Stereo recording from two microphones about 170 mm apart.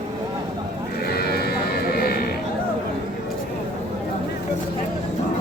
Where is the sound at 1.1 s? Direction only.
65° left (ahead or behind).